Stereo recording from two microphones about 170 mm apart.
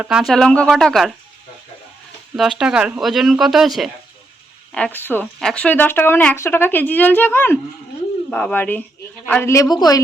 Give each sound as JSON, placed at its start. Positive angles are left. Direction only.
{"t": 0.0, "sound": "speech", "side_deg": -5}
{"t": 2.3, "sound": "a woman's voice", "side_deg": -5}